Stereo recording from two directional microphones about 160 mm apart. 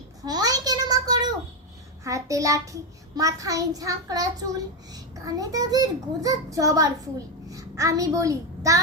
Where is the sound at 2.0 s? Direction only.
20° right (ahead or behind).